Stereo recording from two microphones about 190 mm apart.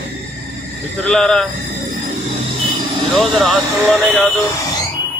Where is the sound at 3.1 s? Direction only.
Centre (ahead or behind).